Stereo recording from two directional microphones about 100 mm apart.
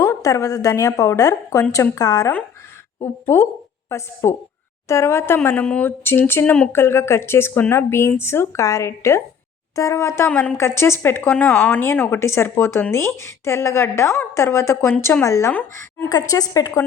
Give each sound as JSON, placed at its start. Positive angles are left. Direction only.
{"t": 0.2, "sound": "a woman's voice", "side_deg": 35}
{"t": 6.4, "sound": "speech", "side_deg": 10}
{"t": 6.7, "sound": "a woman's voice", "side_deg": 25}